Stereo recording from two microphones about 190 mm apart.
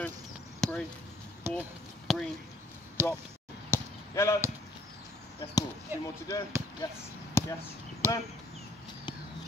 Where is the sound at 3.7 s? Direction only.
15° left (ahead or behind).